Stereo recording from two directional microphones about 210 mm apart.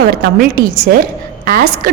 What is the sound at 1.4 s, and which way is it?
Speech, 45° right (ahead or behind).